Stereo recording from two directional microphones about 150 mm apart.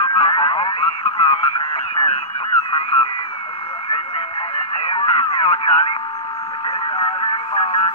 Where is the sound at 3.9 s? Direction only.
40° left (ahead or behind).